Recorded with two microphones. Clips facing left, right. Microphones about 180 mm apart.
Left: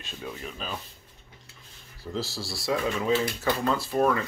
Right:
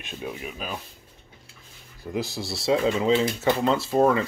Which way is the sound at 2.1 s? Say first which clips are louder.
Right 4 dB; 20° right (ahead or behind).